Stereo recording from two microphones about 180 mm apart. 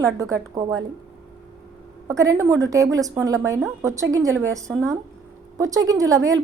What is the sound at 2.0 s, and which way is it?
A woman's voice, 15° right (ahead or behind).